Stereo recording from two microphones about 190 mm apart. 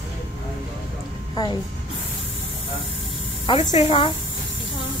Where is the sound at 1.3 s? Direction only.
20° left (ahead or behind).